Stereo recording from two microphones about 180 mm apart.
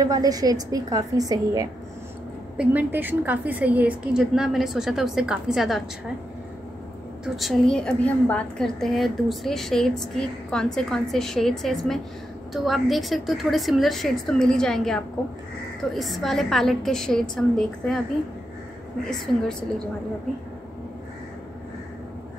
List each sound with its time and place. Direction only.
0.0 s a woman's voice: 20° right (ahead or behind)
2.5 s a woman's voice: 5° right (ahead or behind)
7.3 s a woman's voice: centre (ahead or behind)
19.0 s a woman's voice: 5° left (ahead or behind)